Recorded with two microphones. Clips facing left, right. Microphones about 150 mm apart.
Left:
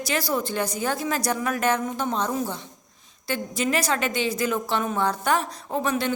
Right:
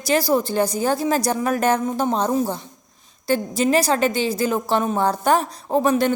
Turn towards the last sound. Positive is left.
turn(degrees=-40)  # may be behind; listen again after turning